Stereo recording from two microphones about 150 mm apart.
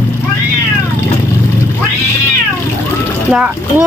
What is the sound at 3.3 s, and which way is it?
Speech, 10° right (ahead or behind).